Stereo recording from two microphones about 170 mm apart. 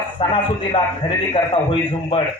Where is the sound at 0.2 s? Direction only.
35° left (ahead or behind).